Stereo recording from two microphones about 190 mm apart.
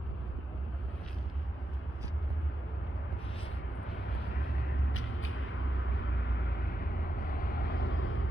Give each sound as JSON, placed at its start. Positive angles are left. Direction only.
{"t": 7.2, "sound": "vehicle", "side_deg": 50}